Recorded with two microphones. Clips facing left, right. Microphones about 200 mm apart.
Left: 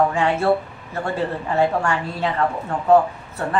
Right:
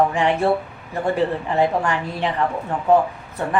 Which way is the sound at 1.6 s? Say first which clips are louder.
Even; 20° right (ahead or behind).